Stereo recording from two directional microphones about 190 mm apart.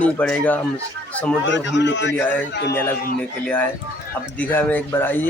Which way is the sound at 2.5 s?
60° left (ahead or behind).